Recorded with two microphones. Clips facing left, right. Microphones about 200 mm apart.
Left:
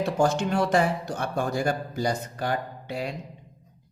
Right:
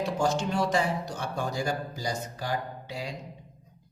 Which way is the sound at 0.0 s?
55° left (ahead or behind).